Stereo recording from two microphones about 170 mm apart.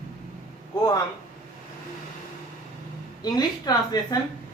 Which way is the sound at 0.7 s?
20° left (ahead or behind).